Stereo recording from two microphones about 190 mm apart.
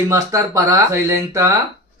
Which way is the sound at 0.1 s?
15° right (ahead or behind).